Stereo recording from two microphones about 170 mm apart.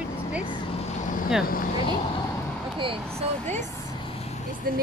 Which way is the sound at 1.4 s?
55° left (ahead or behind).